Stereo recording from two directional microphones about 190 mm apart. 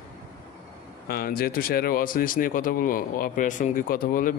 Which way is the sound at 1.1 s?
50° left (ahead or behind).